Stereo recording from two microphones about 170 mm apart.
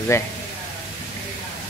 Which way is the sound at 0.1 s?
15° left (ahead or behind).